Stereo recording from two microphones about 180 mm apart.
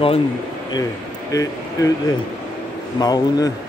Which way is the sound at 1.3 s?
20° left (ahead or behind).